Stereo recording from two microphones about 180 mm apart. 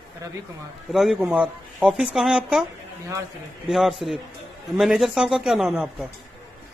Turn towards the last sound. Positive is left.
turn(degrees=-5)  # may be behind; listen again after turning